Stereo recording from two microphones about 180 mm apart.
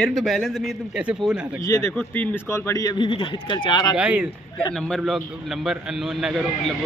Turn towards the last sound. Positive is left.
turn(degrees=0)  # may be behind; listen again after turning